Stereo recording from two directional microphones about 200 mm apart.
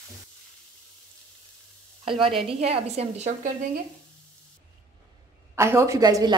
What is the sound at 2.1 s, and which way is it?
A woman's voice, 25° right (ahead or behind).